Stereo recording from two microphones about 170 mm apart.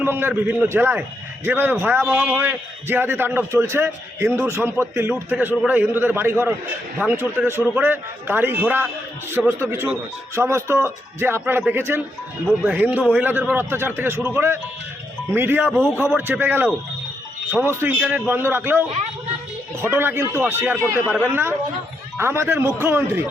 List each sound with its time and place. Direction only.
0.0 s a man's voice: 10° right (ahead or behind)
15.7 s a man's voice: 5° left (ahead or behind)
16.0 s a man's voice: 10° right (ahead or behind)